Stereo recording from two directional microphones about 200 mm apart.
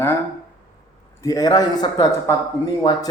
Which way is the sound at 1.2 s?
20° left (ahead or behind).